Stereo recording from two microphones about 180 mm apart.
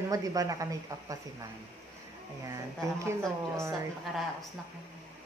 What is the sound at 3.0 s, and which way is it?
Speech, 15° right (ahead or behind).